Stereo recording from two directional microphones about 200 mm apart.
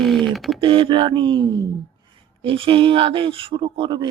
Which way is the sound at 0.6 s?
25° right (ahead or behind).